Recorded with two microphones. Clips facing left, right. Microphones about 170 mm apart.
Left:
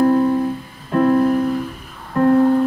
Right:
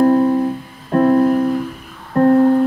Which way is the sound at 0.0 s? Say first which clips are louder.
Right 2 dB; 35° right (ahead or behind).